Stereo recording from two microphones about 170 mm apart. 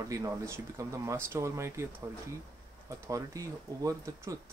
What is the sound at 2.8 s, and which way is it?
Speech, 20° right (ahead or behind).